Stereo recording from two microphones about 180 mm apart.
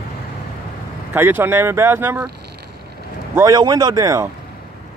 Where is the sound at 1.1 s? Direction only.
10° right (ahead or behind).